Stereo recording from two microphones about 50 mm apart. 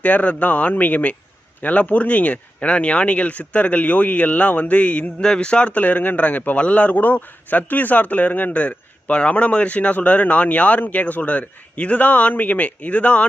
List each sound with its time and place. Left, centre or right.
0.0 s a man's voice: left
5.2 s a man's voice: centre